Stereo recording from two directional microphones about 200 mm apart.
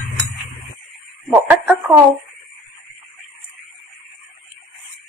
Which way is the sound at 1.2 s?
10° right (ahead or behind).